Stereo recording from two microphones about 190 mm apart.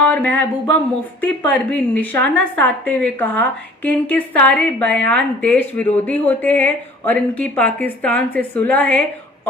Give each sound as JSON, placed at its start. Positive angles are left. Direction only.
{"t": 0.0, "sound": "a woman's voice", "side_deg": 10}